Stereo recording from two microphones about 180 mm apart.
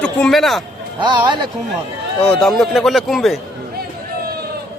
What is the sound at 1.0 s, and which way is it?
Speech, 25° right (ahead or behind).